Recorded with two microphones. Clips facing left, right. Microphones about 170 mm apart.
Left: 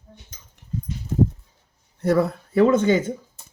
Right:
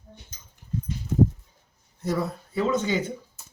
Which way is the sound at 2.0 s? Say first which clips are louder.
Left 8 dB; 60° left (ahead or behind).